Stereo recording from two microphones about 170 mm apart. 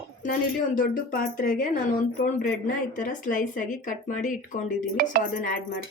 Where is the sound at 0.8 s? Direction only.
55° left (ahead or behind).